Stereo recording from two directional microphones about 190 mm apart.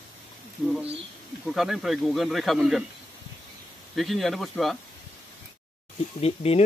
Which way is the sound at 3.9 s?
Centre (ahead or behind).